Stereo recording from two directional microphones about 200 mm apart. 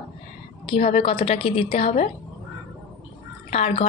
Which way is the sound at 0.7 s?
30° left (ahead or behind).